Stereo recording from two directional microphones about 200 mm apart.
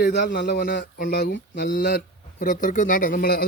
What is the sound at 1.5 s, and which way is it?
Speech, 45° left (ahead or behind).